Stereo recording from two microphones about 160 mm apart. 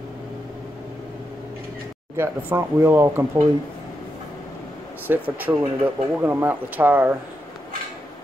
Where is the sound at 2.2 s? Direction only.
15° right (ahead or behind).